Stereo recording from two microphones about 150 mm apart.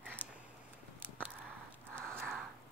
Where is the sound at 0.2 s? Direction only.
10° right (ahead or behind).